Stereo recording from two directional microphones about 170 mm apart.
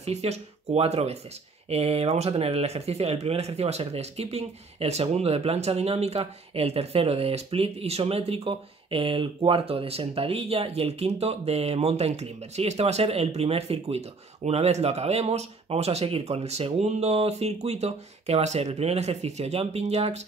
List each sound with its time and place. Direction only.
0.0 s speech: 40° right (ahead or behind)